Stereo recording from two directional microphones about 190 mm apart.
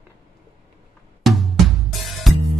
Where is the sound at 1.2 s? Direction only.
Centre (ahead or behind).